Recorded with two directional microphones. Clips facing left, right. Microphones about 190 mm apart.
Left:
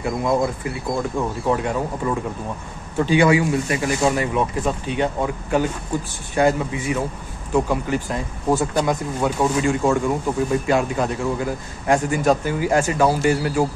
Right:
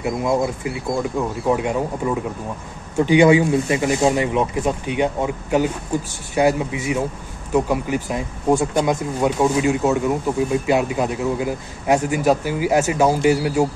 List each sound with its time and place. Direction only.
0.0 s a man's voice: 5° right (ahead or behind)
9.7 s a man's voice: 5° right (ahead or behind)